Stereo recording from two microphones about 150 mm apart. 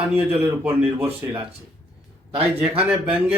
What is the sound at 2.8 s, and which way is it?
Speech, 10° right (ahead or behind).